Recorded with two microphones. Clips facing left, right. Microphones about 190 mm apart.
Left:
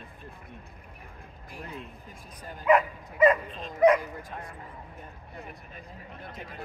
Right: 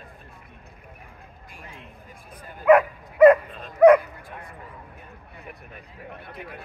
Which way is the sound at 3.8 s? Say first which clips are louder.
Right 7 dB; 55° right (ahead or behind).